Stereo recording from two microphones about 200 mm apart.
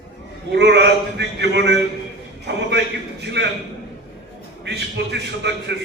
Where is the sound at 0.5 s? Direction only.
60° right (ahead or behind).